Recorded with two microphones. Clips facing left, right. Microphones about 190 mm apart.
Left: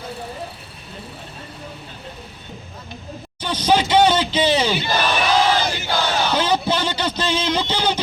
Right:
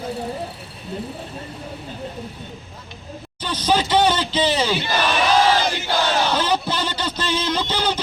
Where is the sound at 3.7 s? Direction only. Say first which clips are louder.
Left 2 dB; 10° left (ahead or behind).